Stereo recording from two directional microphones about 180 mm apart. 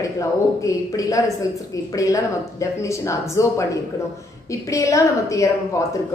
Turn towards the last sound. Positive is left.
turn(degrees=15)  # may be behind; listen again after turning